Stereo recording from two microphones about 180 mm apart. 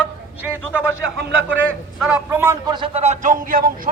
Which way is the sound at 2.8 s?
30° right (ahead or behind).